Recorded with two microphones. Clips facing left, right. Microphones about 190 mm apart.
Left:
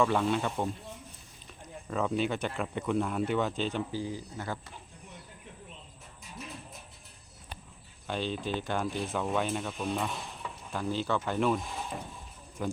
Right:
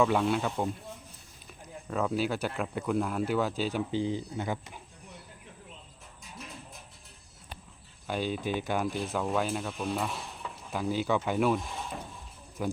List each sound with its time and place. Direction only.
0.0 s speech: 5° right (ahead or behind)
1.9 s speech: centre (ahead or behind)
3.9 s speech: 25° right (ahead or behind)
8.0 s speech: 5° right (ahead or behind)